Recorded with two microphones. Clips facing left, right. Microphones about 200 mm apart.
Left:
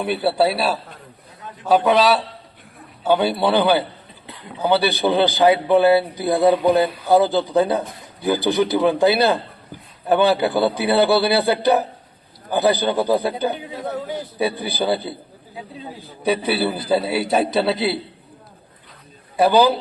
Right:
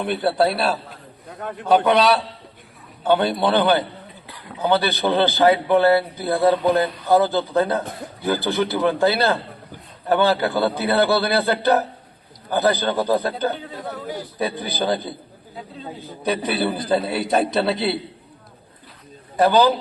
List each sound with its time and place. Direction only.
0.0 s a man's voice: 5° left (ahead or behind)
1.3 s a man's voice: 60° right (ahead or behind)
1.6 s a man's voice: centre (ahead or behind)
16.2 s a man's voice: 10° left (ahead or behind)
19.4 s a man's voice: 10° left (ahead or behind)